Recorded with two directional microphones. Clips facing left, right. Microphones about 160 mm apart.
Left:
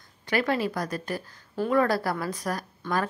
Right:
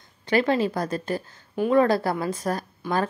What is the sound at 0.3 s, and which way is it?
A woman's voice, 25° right (ahead or behind).